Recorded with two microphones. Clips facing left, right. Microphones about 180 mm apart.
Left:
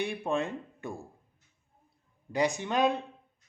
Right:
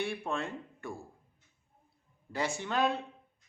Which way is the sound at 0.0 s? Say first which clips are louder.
Left 4 dB; 20° left (ahead or behind).